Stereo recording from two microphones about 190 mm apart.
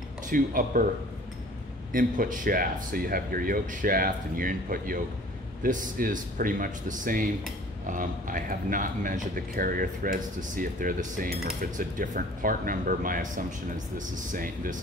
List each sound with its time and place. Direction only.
0.3 s a man's voice: 45° right (ahead or behind)
1.9 s a man's voice: 45° right (ahead or behind)